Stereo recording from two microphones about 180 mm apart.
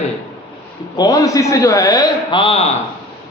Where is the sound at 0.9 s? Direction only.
20° left (ahead or behind).